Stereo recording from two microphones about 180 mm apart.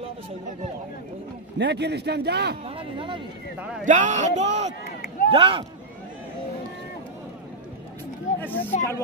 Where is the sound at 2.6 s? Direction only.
30° right (ahead or behind).